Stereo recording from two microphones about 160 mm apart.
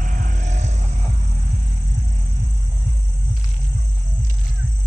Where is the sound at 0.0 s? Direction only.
55° right (ahead or behind).